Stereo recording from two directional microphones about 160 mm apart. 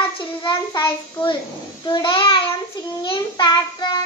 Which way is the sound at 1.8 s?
30° left (ahead or behind).